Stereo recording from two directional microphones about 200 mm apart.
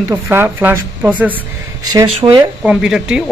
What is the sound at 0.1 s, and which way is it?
A woman's voice, 10° right (ahead or behind).